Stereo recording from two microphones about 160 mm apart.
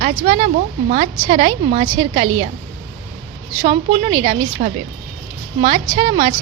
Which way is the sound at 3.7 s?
35° right (ahead or behind).